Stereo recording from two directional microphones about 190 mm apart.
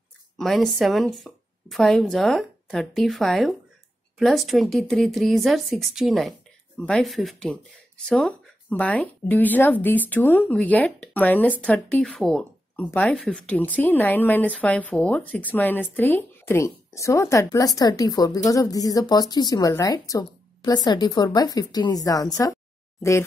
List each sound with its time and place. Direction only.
0.4 s a woman's voice: centre (ahead or behind); by 22.6 s 15° left (ahead or behind)